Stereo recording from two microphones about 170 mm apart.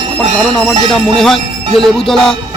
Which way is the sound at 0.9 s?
Centre (ahead or behind).